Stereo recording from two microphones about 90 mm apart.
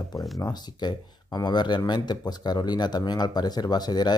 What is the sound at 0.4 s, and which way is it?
Speech, 50° left (ahead or behind).